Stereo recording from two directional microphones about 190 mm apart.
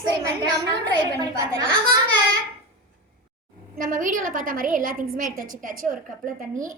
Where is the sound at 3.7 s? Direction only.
45° right (ahead or behind).